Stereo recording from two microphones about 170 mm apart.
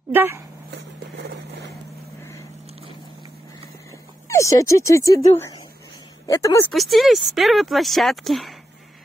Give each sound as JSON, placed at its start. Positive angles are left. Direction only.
{"t": 0.1, "sound": "speech", "side_deg": -10}
{"t": 4.3, "sound": "speech", "side_deg": 20}
{"t": 6.7, "sound": "speech", "side_deg": 0}